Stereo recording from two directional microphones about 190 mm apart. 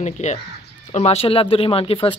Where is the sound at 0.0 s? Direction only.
35° left (ahead or behind).